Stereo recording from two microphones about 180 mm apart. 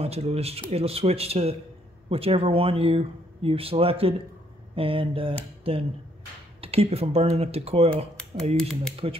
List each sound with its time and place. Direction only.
0.0 s speech: 35° right (ahead or behind)
8.5 s speech: 5° left (ahead or behind)